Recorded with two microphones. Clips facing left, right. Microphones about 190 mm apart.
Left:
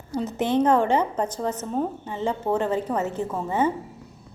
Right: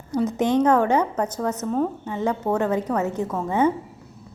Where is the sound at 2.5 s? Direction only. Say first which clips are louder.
Right 1 dB; 10° right (ahead or behind).